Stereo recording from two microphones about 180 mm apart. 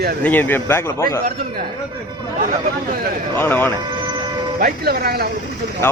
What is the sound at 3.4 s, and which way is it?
Speech, 10° left (ahead or behind).